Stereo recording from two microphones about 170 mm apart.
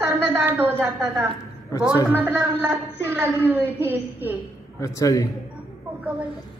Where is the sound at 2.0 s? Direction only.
10° right (ahead or behind).